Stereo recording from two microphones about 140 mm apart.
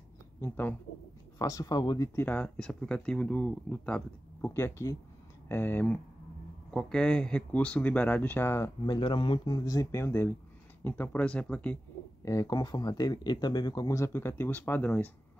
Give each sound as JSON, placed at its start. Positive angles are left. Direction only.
{"t": 0.4, "sound": "speech", "side_deg": 15}
{"t": 1.4, "sound": "speech", "side_deg": 25}
{"t": 2.1, "sound": "speech", "side_deg": 10}
{"t": 8.8, "sound": "speech", "side_deg": 35}
{"t": 12.3, "sound": "speech", "side_deg": 25}